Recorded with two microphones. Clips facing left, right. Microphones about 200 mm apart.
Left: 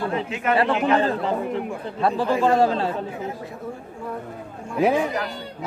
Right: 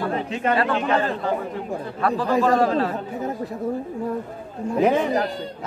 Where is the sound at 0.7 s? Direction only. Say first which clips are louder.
Left 2 dB; 30° right (ahead or behind).